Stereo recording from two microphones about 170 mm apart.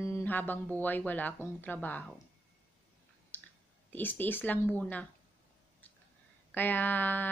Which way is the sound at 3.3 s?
10° left (ahead or behind).